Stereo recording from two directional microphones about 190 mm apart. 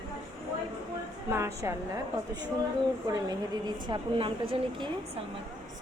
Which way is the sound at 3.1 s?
20° right (ahead or behind).